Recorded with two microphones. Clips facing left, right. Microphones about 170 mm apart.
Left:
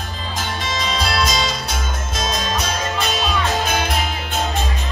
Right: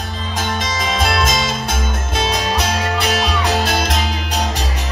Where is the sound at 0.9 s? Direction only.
50° right (ahead or behind); by 4.6 s 85° right.